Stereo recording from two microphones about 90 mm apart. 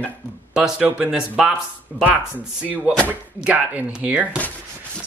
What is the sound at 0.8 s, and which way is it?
Speech, 10° right (ahead or behind).